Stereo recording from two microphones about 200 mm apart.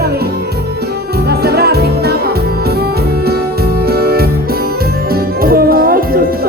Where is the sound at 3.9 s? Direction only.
50° right (ahead or behind).